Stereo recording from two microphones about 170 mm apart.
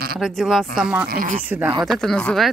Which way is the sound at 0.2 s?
Centre (ahead or behind).